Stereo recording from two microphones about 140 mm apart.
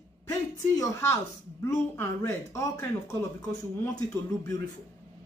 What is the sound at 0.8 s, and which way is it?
Speech, 20° left (ahead or behind).